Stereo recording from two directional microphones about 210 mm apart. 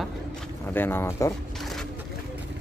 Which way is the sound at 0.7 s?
10° left (ahead or behind).